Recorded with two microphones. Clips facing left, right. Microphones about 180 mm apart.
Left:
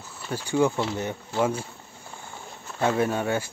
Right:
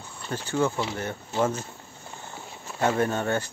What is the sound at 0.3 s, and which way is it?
Speech, 15° left (ahead or behind).